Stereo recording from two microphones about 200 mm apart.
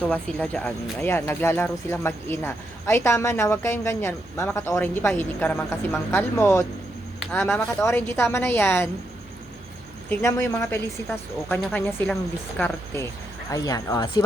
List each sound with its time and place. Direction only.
0.0 s speech: 5° left (ahead or behind)
7.2 s speech: 5° left (ahead or behind)
10.1 s speech: 15° left (ahead or behind)